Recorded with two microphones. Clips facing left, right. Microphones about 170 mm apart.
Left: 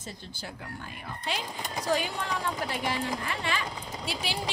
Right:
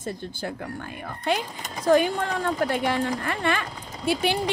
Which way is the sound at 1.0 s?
55° right (ahead or behind).